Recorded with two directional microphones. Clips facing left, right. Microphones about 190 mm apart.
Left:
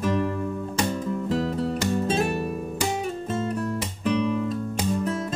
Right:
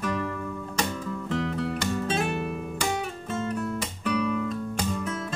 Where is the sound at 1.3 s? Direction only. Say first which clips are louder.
Left 2 dB; 35° left (ahead or behind).